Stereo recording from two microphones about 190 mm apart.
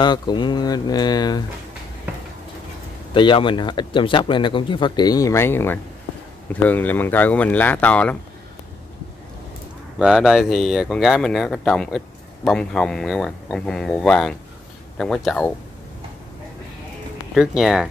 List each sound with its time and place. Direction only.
0.0 s speech: 25° left (ahead or behind)
3.1 s speech: 25° left (ahead or behind); by 8.2 s 5° left (ahead or behind)
9.9 s speech: 5° right (ahead or behind)
17.3 s speech: centre (ahead or behind)